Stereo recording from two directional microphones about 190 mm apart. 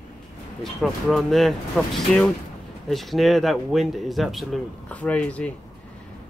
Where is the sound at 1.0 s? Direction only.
Centre (ahead or behind).